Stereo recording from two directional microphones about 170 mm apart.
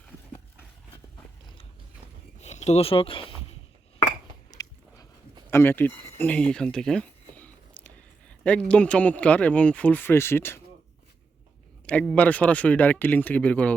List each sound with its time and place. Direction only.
2.4 s speech: 40° left (ahead or behind)
4.6 s a sound: 20° left (ahead or behind)
5.5 s speech: 10° left (ahead or behind)
11.9 s speech: 5° left (ahead or behind)